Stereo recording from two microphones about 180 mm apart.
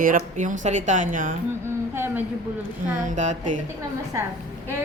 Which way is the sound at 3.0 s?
45° right (ahead or behind).